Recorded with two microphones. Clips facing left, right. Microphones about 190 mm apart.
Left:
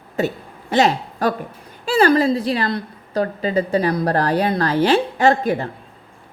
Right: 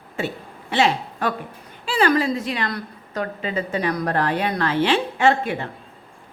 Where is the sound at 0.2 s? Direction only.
40° left (ahead or behind).